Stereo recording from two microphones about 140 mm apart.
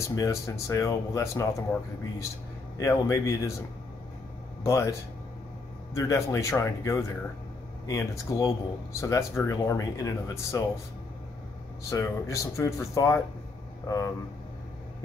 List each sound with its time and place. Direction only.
0.0 s speech: 20° left (ahead or behind)
2.8 s speech: 25° left (ahead or behind)
4.6 s speech: 20° left (ahead or behind)
5.9 s speech: 20° left (ahead or behind)
11.9 s speech: 20° left (ahead or behind)